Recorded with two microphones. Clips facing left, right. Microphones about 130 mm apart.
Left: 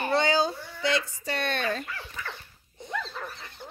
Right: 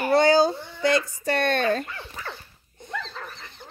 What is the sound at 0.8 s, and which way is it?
Speech, 45° right (ahead or behind).